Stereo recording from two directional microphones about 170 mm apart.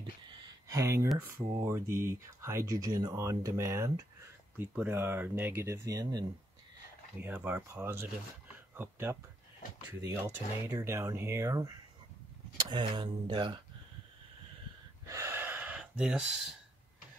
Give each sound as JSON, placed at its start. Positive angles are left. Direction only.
{"t": 0.3, "sound": "a sound", "side_deg": -20}
{"t": 1.2, "sound": "speech", "side_deg": -15}
{"t": 7.2, "sound": "speech", "side_deg": -10}
{"t": 12.7, "sound": "speech", "side_deg": -30}
{"t": 15.0, "sound": "gasp", "side_deg": -15}